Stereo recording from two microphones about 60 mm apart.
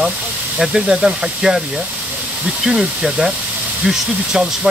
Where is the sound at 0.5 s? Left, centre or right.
Centre.